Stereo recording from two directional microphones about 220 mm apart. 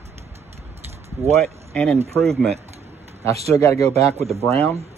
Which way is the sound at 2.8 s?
30° right (ahead or behind).